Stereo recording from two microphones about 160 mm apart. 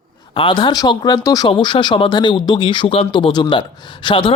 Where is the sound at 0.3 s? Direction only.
30° left (ahead or behind).